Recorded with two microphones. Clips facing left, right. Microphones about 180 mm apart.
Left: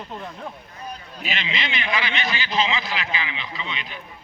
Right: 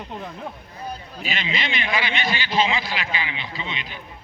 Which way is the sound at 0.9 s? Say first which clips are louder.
Right 1 dB; 40° right (ahead or behind).